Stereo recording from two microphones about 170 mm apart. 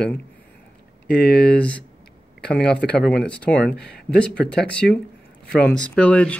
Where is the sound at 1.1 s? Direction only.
70° left (ahead or behind).